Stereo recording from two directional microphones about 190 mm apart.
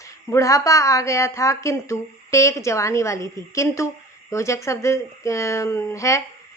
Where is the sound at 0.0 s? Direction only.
15° left (ahead or behind).